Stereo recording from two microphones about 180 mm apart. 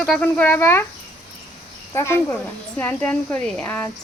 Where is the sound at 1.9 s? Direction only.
15° left (ahead or behind).